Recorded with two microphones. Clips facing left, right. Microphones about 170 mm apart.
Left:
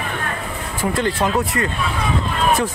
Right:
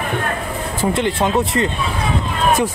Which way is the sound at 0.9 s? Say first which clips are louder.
Right 1 dB; 25° right (ahead or behind).